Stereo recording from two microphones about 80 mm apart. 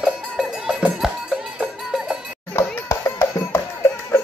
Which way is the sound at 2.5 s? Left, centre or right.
Left.